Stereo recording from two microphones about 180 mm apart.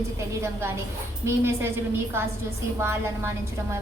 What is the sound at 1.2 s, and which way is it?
Speech, 15° right (ahead or behind).